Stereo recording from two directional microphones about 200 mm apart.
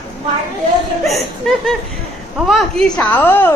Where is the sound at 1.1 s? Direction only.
Centre (ahead or behind).